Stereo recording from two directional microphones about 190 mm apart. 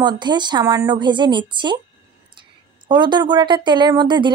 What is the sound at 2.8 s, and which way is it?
Speech, 25° right (ahead or behind).